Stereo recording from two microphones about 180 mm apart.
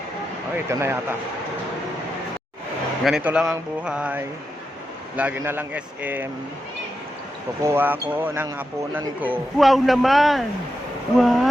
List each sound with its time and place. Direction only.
0.7 s speech: 15° right (ahead or behind)
3.0 s speech: 5° right (ahead or behind)
7.6 s speech: 15° right (ahead or behind)